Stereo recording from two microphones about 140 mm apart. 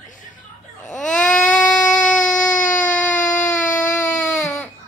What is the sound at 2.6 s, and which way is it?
Baby cry, 65° left (ahead or behind).